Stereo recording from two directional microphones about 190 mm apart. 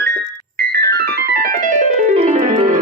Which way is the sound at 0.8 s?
60° right (ahead or behind).